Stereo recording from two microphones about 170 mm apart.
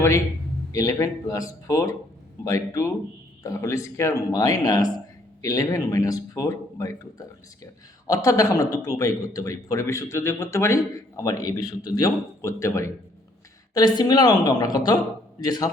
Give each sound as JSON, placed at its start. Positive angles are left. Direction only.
{"t": 0.7, "sound": "speech", "side_deg": 20}